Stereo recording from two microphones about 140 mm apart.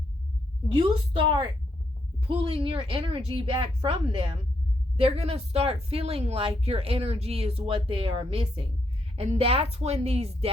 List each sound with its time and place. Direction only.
0.7 s a woman's voice: 40° right (ahead or behind)